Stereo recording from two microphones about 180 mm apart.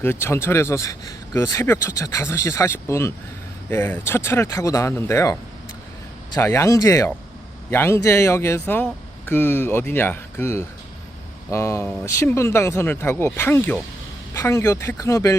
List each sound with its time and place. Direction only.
0.0 s speech: 15° left (ahead or behind)